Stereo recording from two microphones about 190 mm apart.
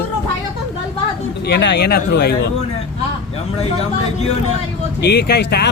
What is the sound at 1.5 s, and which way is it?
Speech, 60° left (ahead or behind).